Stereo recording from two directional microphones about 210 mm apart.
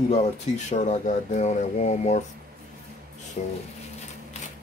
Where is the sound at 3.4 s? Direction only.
35° left (ahead or behind).